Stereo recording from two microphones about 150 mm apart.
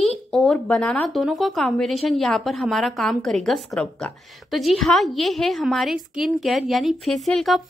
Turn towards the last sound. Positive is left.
turn(degrees=0)  # may be behind; listen again after turning